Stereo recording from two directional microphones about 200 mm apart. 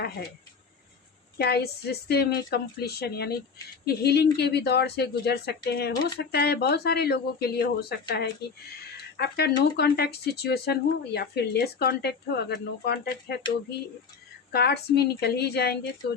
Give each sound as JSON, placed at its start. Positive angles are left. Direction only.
{"t": 1.4, "sound": "speech", "side_deg": 55}
{"t": 14.5, "sound": "speech", "side_deg": 55}